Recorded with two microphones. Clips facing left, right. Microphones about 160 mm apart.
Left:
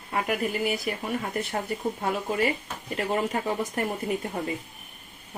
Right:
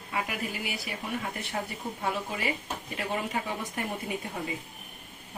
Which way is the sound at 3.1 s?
45° left (ahead or behind).